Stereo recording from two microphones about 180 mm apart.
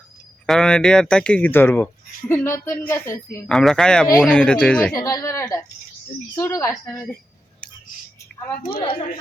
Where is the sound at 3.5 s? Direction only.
Centre (ahead or behind).